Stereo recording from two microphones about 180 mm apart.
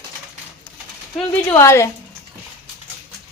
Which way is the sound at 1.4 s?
15° left (ahead or behind).